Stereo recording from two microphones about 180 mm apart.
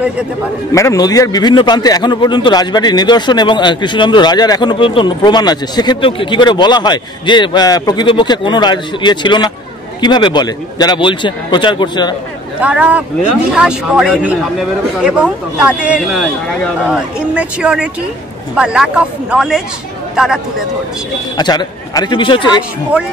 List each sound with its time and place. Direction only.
0.7 s a man's voice: 20° left (ahead or behind)
12.5 s speech: 5° right (ahead or behind)
21.4 s a man's voice: 25° left (ahead or behind)